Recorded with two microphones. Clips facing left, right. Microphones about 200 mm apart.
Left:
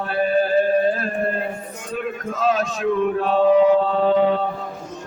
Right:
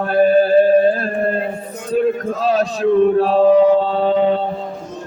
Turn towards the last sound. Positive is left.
turn(degrees=-30)  # may be behind; listen again after turning